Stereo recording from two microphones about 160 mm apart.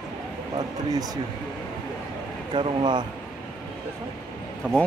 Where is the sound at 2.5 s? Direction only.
30° right (ahead or behind).